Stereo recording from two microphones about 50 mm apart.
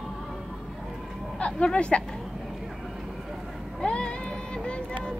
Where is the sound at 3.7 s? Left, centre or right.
Centre.